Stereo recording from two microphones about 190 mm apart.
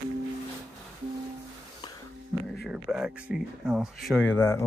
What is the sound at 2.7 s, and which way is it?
Speech, 5° right (ahead or behind).